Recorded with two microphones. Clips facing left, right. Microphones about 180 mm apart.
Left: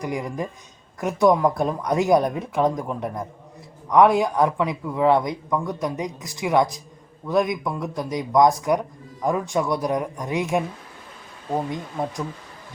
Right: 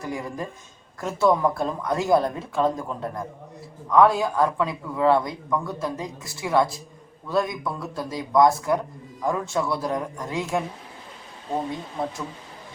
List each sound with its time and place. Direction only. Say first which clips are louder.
0.0 s speech: left 3 dB; 15° left (ahead or behind)